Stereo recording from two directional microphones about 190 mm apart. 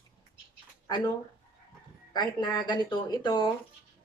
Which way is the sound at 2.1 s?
20° left (ahead or behind).